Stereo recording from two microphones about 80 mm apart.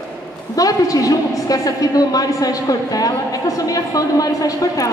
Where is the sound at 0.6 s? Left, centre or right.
Left.